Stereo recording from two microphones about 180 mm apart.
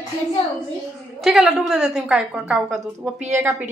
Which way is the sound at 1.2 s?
Centre (ahead or behind).